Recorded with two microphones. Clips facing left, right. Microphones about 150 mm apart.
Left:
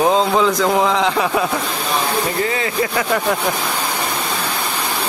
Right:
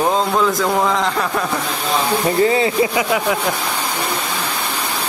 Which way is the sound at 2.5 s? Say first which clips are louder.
Right 4 dB; 25° right (ahead or behind).